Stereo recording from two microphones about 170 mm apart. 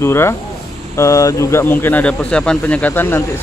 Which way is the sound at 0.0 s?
15° left (ahead or behind).